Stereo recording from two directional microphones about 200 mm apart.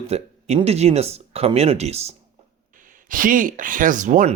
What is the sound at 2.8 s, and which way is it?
Speech, 40° right (ahead or behind).